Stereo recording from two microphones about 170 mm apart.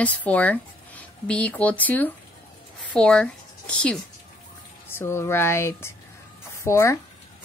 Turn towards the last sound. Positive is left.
turn(degrees=15)  # may be behind; listen again after turning